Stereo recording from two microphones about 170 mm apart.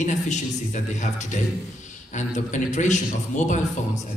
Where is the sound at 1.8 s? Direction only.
45° left (ahead or behind).